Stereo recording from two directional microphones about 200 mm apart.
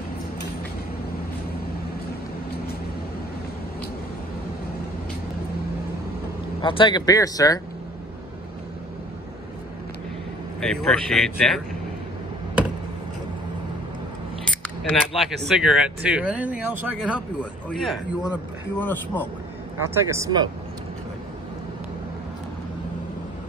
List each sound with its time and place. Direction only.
6.6 s speech: 25° left (ahead or behind)
10.6 s speech: 5° left (ahead or behind)
14.4 s speech: 5° left (ahead or behind)
17.4 s speech: 5° left (ahead or behind)
18.8 s speech: 10° left (ahead or behind)
20.1 s speech: 15° right (ahead or behind)